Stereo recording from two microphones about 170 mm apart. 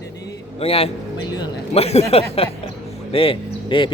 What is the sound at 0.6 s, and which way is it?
A man's voice, 35° left (ahead or behind).